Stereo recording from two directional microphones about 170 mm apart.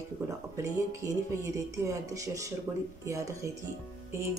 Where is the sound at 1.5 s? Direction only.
20° right (ahead or behind).